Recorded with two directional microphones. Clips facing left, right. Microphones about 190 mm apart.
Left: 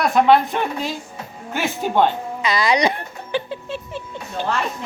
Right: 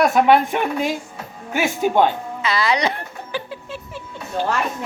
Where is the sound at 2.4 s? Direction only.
15° left (ahead or behind).